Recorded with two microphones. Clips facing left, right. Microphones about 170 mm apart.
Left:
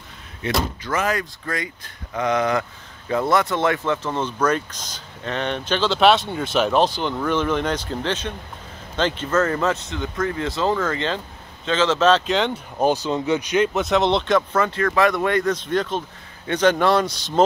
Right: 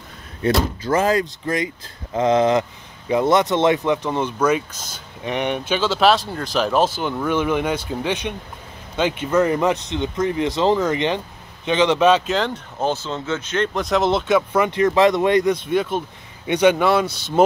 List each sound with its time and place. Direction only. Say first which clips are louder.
0.4 s speech: right 5 dB; 30° right (ahead or behind); by 12.4 s 10° right (ahead or behind)
12.7 s speech: left 4 dB; 15° left (ahead or behind)
13.7 s a man's voice: even; centre (ahead or behind)